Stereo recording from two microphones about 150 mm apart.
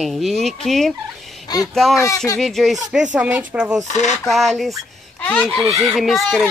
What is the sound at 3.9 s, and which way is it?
Speech, 50° left (ahead or behind).